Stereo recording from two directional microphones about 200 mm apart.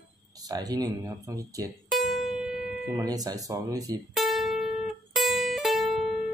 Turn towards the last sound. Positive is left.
turn(degrees=0)  # may be behind; listen again after turning